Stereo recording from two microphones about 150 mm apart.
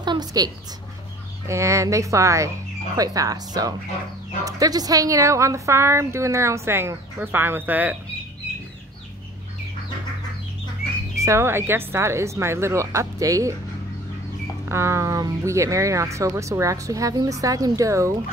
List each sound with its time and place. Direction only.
0.0 s a sound: 30° right (ahead or behind)
1.5 s a woman's voice: 20° right (ahead or behind)
11.1 s speech: 20° right (ahead or behind)
14.7 s a woman's voice: 20° right (ahead or behind)